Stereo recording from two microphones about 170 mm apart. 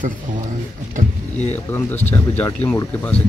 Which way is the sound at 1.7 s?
10° left (ahead or behind).